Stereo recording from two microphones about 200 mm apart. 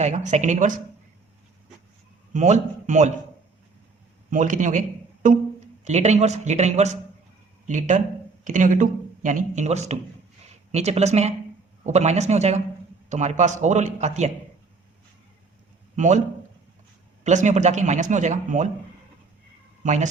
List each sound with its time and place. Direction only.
0.0 s speech: 35° right (ahead or behind)
2.3 s speech: 35° right (ahead or behind)
4.3 s a man's voice: 40° right (ahead or behind)
16.0 s speech: 35° right (ahead or behind)
17.2 s speech: 35° right (ahead or behind)
19.8 s a man's voice: 35° right (ahead or behind)